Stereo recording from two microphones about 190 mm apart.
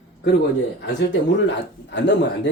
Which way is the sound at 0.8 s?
65° left (ahead or behind).